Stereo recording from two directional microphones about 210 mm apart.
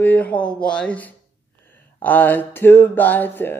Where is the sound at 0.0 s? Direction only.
10° left (ahead or behind).